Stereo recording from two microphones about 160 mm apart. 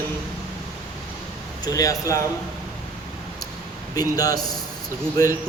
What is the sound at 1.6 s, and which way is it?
Speech, 20° left (ahead or behind).